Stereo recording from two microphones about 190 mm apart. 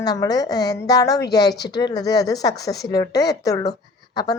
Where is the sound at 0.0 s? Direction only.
20° left (ahead or behind).